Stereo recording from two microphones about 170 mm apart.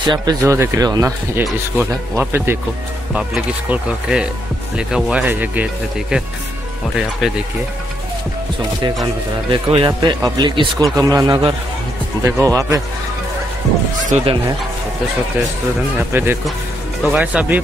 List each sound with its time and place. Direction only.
0.0 s speech: 25° right (ahead or behind); by 6.2 s 5° right (ahead or behind)
9.5 s speech: 30° right (ahead or behind)
14.0 s speech: 35° right (ahead or behind)
16.1 s speech: 10° right (ahead or behind)